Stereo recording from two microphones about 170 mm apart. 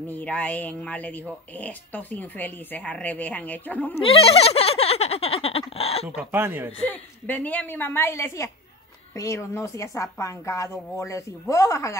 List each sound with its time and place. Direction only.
0.1 s a woman's voice: 10° left (ahead or behind)
4.0 s speech: 35° left (ahead or behind)
6.0 s speech: 10° right (ahead or behind)
6.9 s a woman's voice: 10° left (ahead or behind)